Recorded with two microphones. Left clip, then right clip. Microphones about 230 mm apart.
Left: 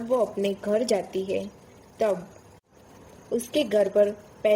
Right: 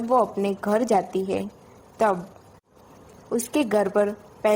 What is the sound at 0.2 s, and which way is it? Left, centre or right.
A woman's voice, centre.